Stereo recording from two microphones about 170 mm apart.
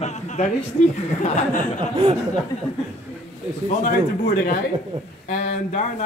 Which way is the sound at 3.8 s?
55° left (ahead or behind).